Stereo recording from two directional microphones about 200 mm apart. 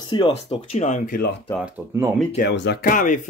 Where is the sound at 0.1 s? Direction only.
25° left (ahead or behind); by 1.3 s 45° left (ahead or behind).